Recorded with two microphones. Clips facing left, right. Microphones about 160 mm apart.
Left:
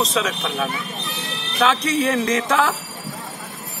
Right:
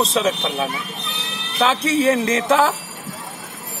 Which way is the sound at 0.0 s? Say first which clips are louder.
Right 2 dB; 30° right (ahead or behind).